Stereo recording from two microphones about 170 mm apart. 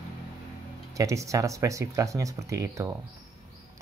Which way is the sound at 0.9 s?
20° right (ahead or behind).